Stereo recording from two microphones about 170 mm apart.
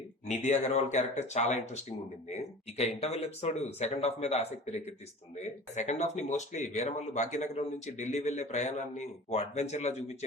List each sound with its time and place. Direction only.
0.4 s speech: 40° left (ahead or behind)